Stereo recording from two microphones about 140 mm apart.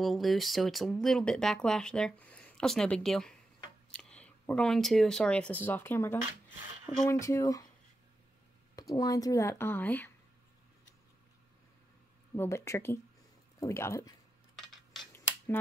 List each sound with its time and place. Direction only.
0.0 s a woman's voice: centre (ahead or behind); by 7.6 s 25° left (ahead or behind)
8.9 s a woman's voice: 25° left (ahead or behind)
12.4 s a woman's voice: 20° left (ahead or behind)
14.7 s cutlery: centre (ahead or behind)
15.1 s cutlery: 15° left (ahead or behind)